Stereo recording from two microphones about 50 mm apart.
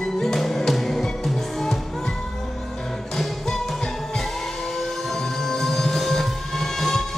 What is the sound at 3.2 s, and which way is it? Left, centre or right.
Music, centre.